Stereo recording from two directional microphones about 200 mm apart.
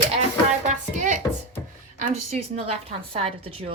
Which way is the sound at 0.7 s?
40° right (ahead or behind).